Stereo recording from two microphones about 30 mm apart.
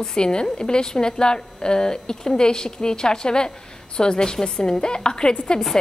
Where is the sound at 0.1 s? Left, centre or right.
Left.